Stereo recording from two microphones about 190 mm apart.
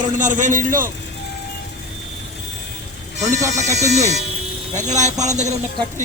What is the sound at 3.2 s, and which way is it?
Speech, 40° right (ahead or behind).